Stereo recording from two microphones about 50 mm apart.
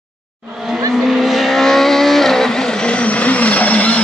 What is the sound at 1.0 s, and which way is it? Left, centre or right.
Vehicle, centre.